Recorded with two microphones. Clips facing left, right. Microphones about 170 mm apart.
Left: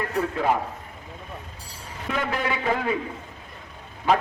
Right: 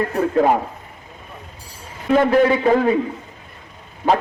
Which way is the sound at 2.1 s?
40° right (ahead or behind).